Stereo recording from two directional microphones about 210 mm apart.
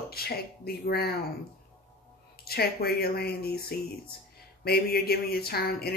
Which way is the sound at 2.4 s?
45° left (ahead or behind).